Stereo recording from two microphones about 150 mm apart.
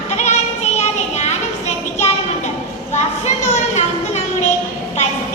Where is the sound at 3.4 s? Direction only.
50° left (ahead or behind).